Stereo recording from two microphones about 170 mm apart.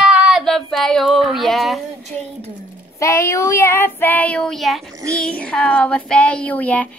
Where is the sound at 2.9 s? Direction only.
15° left (ahead or behind).